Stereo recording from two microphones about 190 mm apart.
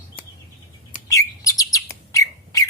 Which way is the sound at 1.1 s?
20° left (ahead or behind).